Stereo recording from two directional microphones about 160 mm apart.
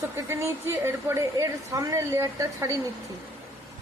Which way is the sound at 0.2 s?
20° right (ahead or behind).